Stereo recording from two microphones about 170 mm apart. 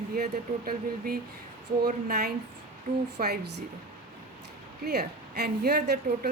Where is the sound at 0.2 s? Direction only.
60° right (ahead or behind); by 3.6 s 75° right (ahead or behind).